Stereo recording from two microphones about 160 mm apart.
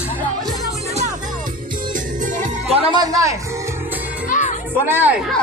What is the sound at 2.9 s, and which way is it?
Speech, 25° right (ahead or behind).